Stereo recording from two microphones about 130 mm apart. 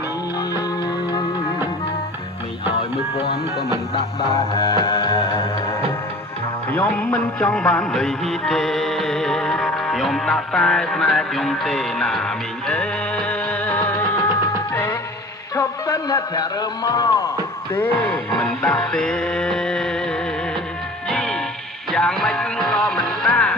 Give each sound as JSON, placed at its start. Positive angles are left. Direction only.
{"t": 4.5, "sound": "music", "side_deg": 30}
{"t": 6.7, "sound": "music", "side_deg": 15}
{"t": 15.5, "sound": "a man's voice", "side_deg": 25}
{"t": 17.7, "sound": "music", "side_deg": 15}
{"t": 21.1, "sound": "music", "side_deg": 5}